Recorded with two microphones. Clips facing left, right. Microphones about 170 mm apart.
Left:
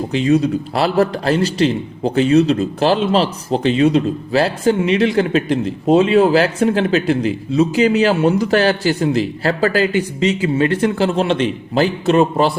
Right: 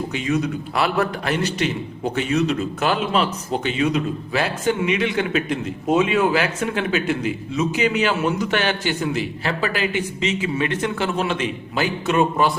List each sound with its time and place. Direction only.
0.1 s a man's voice: 35° left (ahead or behind)